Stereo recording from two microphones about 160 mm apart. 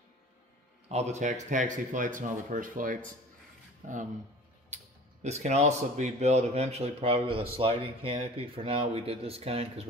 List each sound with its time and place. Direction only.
0.8 s speech: 45° right (ahead or behind)
5.2 s speech: 45° right (ahead or behind)